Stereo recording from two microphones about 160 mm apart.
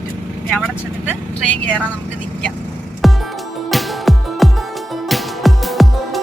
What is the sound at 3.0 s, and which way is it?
Music, centre (ahead or behind).